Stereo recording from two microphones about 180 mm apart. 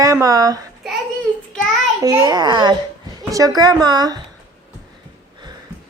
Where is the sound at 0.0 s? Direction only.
20° right (ahead or behind).